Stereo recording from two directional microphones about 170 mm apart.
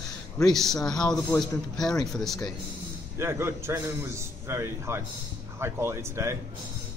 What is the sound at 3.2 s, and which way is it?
A man's voice, 15° right (ahead or behind).